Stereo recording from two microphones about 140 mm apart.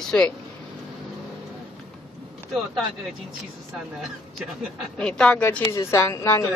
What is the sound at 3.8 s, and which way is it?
A woman's voice, 5° right (ahead or behind).